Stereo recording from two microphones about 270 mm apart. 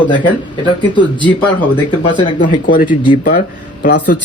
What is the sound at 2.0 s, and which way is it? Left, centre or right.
Speech, left.